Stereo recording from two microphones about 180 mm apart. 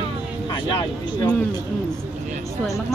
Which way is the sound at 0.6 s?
20° left (ahead or behind).